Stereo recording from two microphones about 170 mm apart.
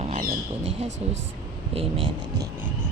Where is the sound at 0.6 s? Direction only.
90° right.